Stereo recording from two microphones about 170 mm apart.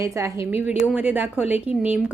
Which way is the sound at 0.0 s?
20° right (ahead or behind).